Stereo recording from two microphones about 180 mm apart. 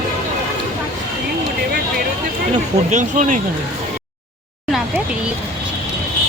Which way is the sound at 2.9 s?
45° right (ahead or behind).